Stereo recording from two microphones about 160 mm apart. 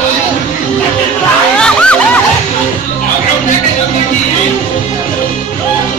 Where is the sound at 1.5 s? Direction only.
5° left (ahead or behind).